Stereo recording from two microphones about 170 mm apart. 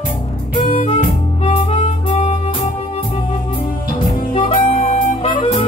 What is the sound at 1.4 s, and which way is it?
Harmonica, 35° left (ahead or behind).